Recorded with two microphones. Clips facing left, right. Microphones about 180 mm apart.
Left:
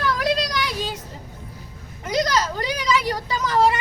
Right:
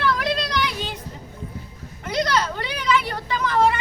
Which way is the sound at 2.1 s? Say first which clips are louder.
Left 1 dB; 40° left (ahead or behind).